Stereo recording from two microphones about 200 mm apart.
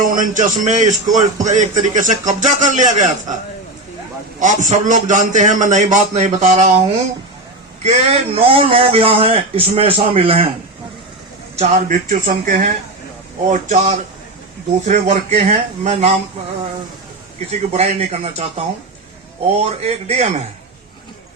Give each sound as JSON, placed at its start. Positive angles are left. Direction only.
{"t": 0.0, "sound": "a man's voice", "side_deg": -40}
{"t": 4.4, "sound": "a man's voice", "side_deg": -40}
{"t": 11.5, "sound": "a man's voice", "side_deg": -35}
{"t": 17.5, "sound": "a man's voice", "side_deg": -30}
{"t": 19.6, "sound": "a man's voice", "side_deg": -30}